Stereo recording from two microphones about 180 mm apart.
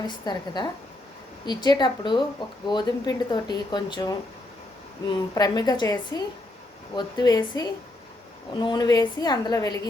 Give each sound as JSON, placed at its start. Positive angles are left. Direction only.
{"t": 0.3, "sound": "speech", "side_deg": 25}
{"t": 5.3, "sound": "speech", "side_deg": 20}